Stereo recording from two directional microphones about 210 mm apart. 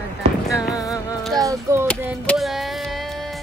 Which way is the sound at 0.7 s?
15° left (ahead or behind).